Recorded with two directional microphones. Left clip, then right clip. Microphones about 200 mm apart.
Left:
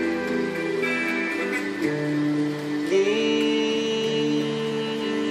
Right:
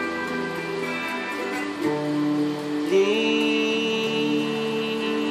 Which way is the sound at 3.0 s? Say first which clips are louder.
Right 1 dB; 35° left (ahead or behind).